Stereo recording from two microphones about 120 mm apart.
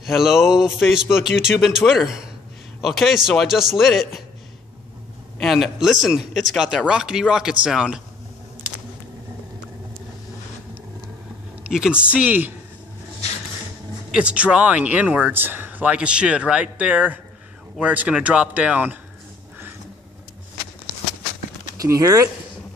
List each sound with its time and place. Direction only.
0.0 s a sound: centre (ahead or behind)
1.1 s speech: 5° right (ahead or behind)
5.4 s speech: centre (ahead or behind)
11.6 s speech: 5° right (ahead or behind)
14.1 s speech: 10° right (ahead or behind)
21.8 s speech: 25° right (ahead or behind)